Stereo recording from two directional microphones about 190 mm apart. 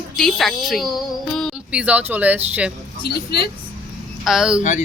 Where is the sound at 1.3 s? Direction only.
Centre (ahead or behind).